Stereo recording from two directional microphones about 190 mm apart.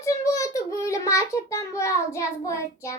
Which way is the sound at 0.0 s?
15° left (ahead or behind).